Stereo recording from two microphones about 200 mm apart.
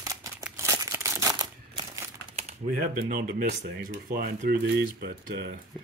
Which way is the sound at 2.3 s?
45° right (ahead or behind).